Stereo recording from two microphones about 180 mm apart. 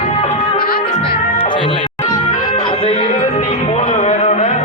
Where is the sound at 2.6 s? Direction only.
30° left (ahead or behind).